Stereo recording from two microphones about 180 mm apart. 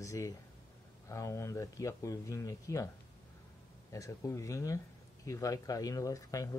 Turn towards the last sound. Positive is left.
turn(degrees=20)  # may be behind; listen again after turning